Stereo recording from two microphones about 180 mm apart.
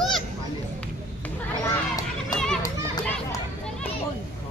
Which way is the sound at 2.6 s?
20° left (ahead or behind).